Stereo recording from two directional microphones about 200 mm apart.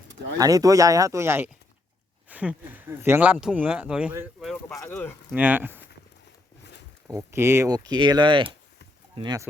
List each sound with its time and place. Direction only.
0.3 s speech: 15° right (ahead or behind)
4.8 s speech: 10° left (ahead or behind)
5.3 s speech: 10° right (ahead or behind)
7.1 s speech: 15° right (ahead or behind)